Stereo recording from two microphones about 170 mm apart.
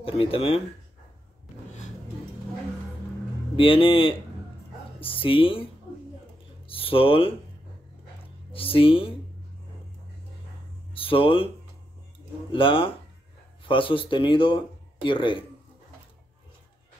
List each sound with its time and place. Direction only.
0.0 s speech: 35° left (ahead or behind)
3.5 s speech: 30° left (ahead or behind)
6.7 s speech: 30° left (ahead or behind)
8.5 s speech: 30° left (ahead or behind)
10.9 s a sound: 30° left (ahead or behind)
12.4 s a man's voice: 30° left (ahead or behind)